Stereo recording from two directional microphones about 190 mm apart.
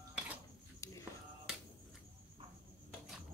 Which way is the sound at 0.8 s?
15° left (ahead or behind).